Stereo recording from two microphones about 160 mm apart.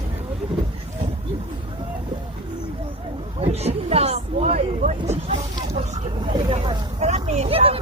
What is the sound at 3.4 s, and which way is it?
Vehicle, 40° right (ahead or behind).